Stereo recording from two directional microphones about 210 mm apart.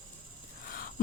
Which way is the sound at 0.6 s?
40° left (ahead or behind).